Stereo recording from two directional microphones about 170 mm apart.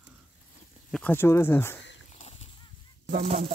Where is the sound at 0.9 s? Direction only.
5° left (ahead or behind).